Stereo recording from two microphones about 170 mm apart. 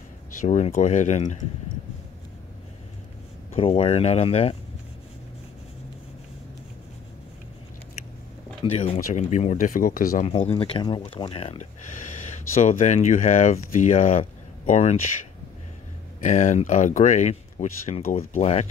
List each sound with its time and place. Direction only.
0.4 s speech: 45° left (ahead or behind)
3.5 s speech: 35° left (ahead or behind)
8.7 s speech: 40° left (ahead or behind); by 10.2 s 55° left (ahead or behind)
10.2 s speech: 35° left (ahead or behind)
16.2 s speech: 45° left (ahead or behind)